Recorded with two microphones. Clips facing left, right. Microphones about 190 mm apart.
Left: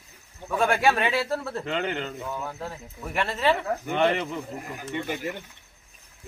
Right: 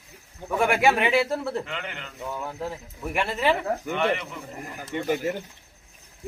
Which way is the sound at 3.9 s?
35° left (ahead or behind).